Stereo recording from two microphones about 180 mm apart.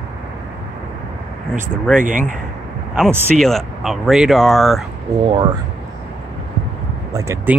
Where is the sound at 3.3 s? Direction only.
Centre (ahead or behind).